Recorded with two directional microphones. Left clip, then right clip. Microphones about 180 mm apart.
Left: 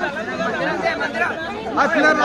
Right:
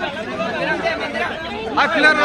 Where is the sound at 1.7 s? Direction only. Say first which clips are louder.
Right 2 dB; 50° left (ahead or behind).